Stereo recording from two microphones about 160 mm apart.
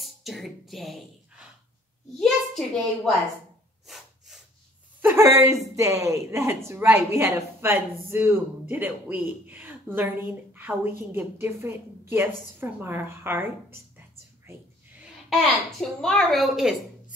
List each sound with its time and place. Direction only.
0.0 s music: centre (ahead or behind)
2.1 s a child's voice: centre (ahead or behind)
3.8 s snort: centre (ahead or behind)
5.0 s a woman's voice: 15° right (ahead or behind)
15.8 s a woman's voice: 5° left (ahead or behind)